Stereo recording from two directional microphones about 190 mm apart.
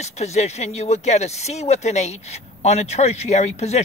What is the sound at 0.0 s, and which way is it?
Speech, 35° left (ahead or behind).